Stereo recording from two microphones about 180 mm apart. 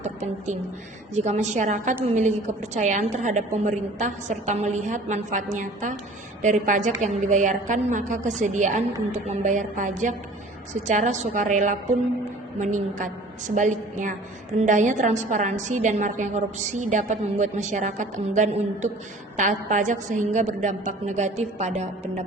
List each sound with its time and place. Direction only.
0.0 s a woman's voice: 40° right (ahead or behind)